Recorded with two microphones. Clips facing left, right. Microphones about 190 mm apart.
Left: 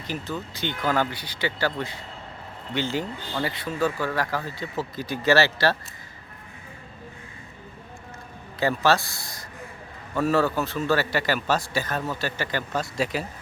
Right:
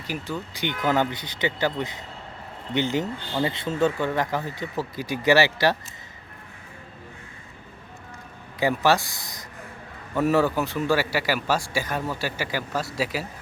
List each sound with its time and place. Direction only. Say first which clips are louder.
0.1 s speech: right 1 dB; 15° right (ahead or behind)
8.5 s speech: right 1 dB; 15° right (ahead or behind)